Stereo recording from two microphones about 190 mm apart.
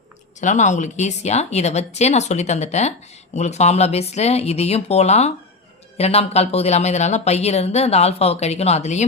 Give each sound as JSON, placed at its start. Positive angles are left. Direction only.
{"t": 0.3, "sound": "speech", "side_deg": 40}